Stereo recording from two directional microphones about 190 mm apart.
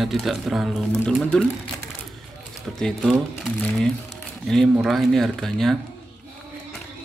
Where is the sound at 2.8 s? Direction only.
Centre (ahead or behind).